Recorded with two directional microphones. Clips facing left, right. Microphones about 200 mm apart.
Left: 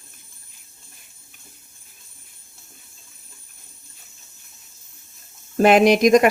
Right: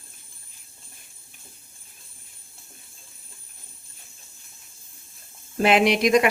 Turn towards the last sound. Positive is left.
turn(degrees=45)  # may be behind; listen again after turning